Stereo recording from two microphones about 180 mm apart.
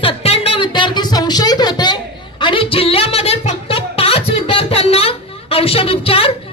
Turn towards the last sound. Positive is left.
turn(degrees=30)  # may be behind; listen again after turning